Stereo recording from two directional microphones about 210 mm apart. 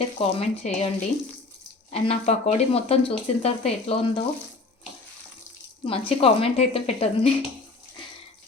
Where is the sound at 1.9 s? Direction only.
30° left (ahead or behind).